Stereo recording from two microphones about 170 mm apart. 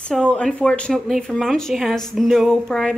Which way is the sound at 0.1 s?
5° left (ahead or behind).